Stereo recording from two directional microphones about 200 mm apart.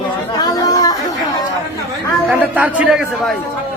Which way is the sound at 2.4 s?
5° right (ahead or behind).